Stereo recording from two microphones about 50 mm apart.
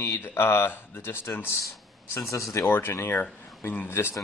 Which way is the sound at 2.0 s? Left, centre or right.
Left.